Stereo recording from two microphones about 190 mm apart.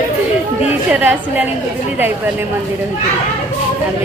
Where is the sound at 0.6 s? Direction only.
5° right (ahead or behind).